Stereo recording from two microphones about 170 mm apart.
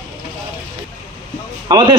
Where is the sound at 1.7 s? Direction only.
25° right (ahead or behind).